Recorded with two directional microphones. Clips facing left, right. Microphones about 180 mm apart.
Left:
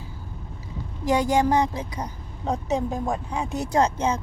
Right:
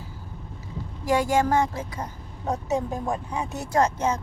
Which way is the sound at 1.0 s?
20° left (ahead or behind).